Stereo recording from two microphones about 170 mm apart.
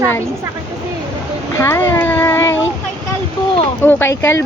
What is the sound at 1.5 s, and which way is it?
Speech, 15° left (ahead or behind).